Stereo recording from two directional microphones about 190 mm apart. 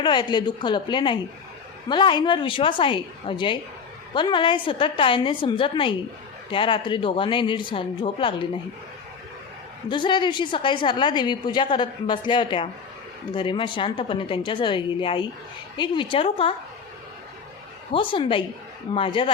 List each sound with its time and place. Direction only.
0.0 s a woman's voice: 25° left (ahead or behind)
9.9 s a woman's voice: 25° left (ahead or behind)
17.9 s a woman's voice: 25° left (ahead or behind)